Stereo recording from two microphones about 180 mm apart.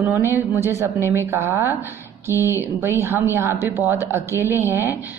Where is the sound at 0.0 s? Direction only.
10° right (ahead or behind).